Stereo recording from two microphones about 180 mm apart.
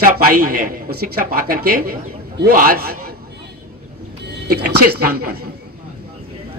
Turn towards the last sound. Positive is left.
turn(degrees=-60)  # may be behind; listen again after turning